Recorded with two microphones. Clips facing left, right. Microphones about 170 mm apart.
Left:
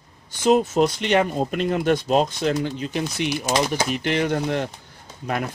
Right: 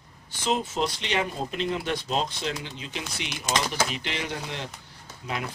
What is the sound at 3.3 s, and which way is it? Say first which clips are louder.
Speech: left 5 dB; 10° left (ahead or behind).